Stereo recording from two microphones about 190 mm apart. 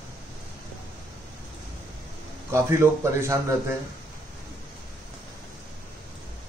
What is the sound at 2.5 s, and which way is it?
Speech, 15° right (ahead or behind).